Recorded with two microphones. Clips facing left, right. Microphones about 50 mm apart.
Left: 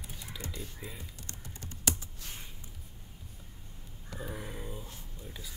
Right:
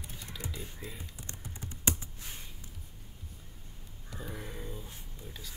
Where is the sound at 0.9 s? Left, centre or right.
Right.